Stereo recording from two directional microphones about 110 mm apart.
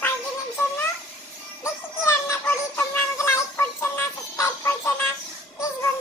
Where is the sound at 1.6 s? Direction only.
25° left (ahead or behind).